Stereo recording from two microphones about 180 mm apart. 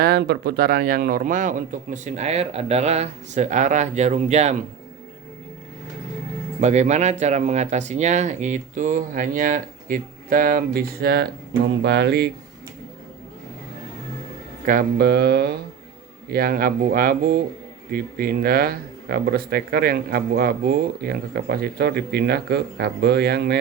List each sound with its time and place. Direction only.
0.0 s speech: 65° right (ahead or behind); by 4.5 s 40° right (ahead or behind)
6.6 s speech: 40° right (ahead or behind); by 11.3 s 60° right (ahead or behind)
11.8 s speech: 75° right (ahead or behind)
14.6 s speech: 50° right (ahead or behind)